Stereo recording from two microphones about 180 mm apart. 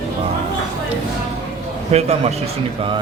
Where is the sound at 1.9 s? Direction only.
35° right (ahead or behind).